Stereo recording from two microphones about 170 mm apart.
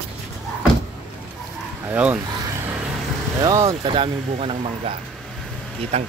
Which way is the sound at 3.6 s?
30° right (ahead or behind).